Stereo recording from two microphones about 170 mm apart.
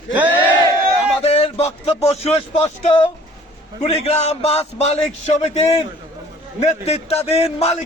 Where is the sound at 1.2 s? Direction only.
35° left (ahead or behind).